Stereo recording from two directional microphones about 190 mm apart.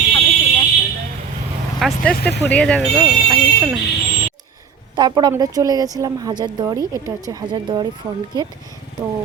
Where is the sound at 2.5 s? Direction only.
5° left (ahead or behind).